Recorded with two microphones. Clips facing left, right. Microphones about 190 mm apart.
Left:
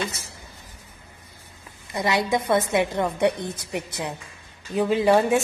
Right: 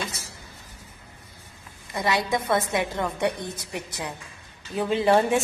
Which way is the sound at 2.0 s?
25° left (ahead or behind).